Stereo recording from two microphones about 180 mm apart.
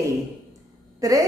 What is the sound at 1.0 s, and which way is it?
Speech, 20° right (ahead or behind).